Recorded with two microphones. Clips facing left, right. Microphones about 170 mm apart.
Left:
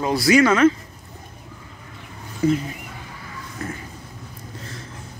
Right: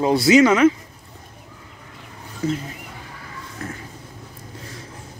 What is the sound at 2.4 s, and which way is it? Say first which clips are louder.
Speech: left 5 dB; 10° left (ahead or behind).